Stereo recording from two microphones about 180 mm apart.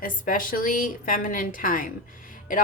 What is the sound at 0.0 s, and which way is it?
A woman's voice, 50° left (ahead or behind).